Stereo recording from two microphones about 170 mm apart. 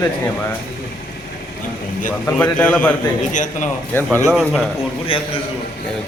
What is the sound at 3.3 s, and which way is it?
Speech, 50° left (ahead or behind).